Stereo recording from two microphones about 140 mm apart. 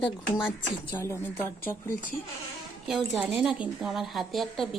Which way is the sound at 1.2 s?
15° left (ahead or behind).